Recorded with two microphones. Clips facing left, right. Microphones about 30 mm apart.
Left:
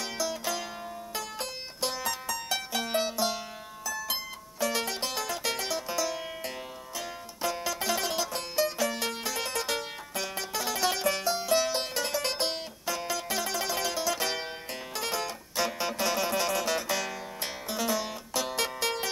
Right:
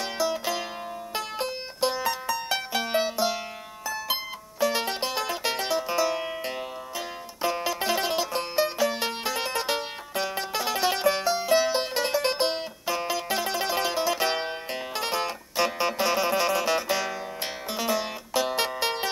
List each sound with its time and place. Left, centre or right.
0.0 s music: right